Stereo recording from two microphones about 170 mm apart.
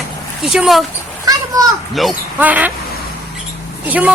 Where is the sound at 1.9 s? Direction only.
5° right (ahead or behind).